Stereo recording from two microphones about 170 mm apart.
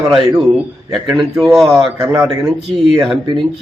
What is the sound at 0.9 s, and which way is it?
A man's voice, centre (ahead or behind).